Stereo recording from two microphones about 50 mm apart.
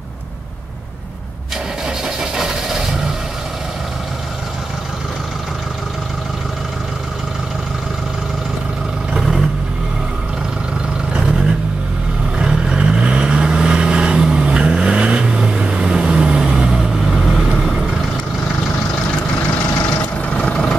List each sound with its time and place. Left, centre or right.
2.3 s vehicle: centre
9.1 s vehicle: centre
12.4 s vehicle: centre
20.2 s vehicle: left